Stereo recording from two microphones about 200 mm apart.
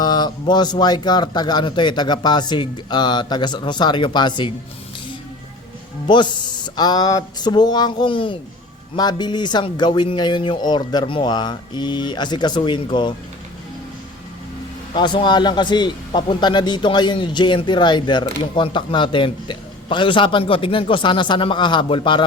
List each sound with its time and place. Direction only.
0.0 s a man's voice: 20° left (ahead or behind)
6.1 s a man's voice: 20° left (ahead or behind)
14.9 s a man's voice: 20° left (ahead or behind)